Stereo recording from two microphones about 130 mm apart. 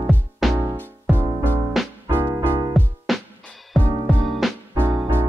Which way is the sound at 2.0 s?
15° right (ahead or behind).